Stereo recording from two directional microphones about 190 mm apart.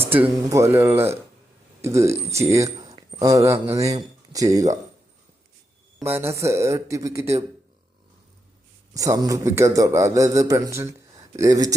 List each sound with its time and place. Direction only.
0.0 s a man's voice: 10° right (ahead or behind)
6.1 s a man's voice: 15° right (ahead or behind)
9.0 s a man's voice: 20° right (ahead or behind)